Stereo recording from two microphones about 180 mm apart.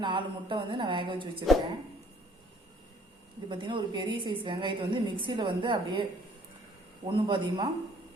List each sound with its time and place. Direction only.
0.0 s a woman's voice: 25° right (ahead or behind)
3.5 s a woman's voice: 25° right (ahead or behind)
7.1 s a woman's voice: 25° right (ahead or behind)